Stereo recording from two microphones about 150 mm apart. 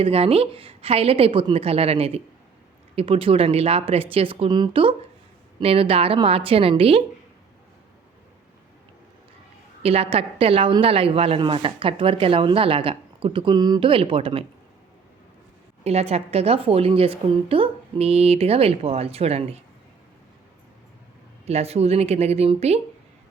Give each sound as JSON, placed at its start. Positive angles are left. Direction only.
{"t": 0.0, "sound": "a woman's voice", "side_deg": -40}
{"t": 9.8, "sound": "a woman's voice", "side_deg": -40}
{"t": 15.8, "sound": "a woman's voice", "side_deg": -45}
{"t": 21.4, "sound": "speech", "side_deg": -45}